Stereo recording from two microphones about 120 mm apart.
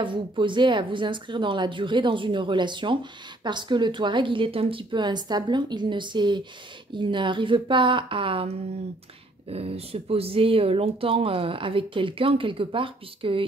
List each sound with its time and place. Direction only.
0.0 s a woman's voice: 45° right (ahead or behind)